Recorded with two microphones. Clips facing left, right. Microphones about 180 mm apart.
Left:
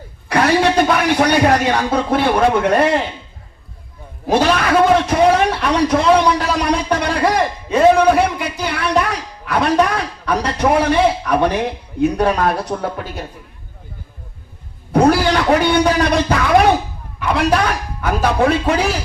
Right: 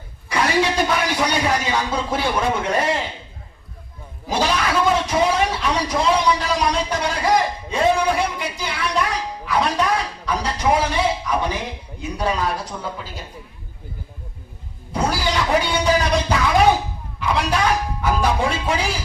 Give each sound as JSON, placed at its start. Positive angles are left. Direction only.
{"t": 0.3, "sound": "a man's voice", "side_deg": 60}
{"t": 4.3, "sound": "a sound", "side_deg": 60}
{"t": 14.9, "sound": "a man's voice", "side_deg": 60}